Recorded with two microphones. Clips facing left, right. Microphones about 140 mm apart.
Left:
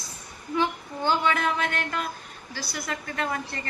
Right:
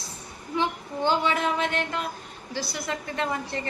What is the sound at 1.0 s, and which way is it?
A woman's voice, 25° right (ahead or behind).